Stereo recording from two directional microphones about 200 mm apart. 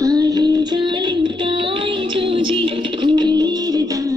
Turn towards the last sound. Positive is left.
turn(degrees=-20)  # may be behind; listen again after turning